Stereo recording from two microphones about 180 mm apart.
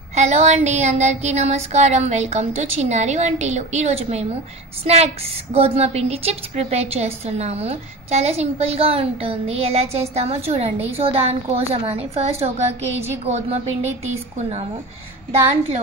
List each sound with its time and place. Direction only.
0.1 s a woman's voice: 40° right (ahead or behind)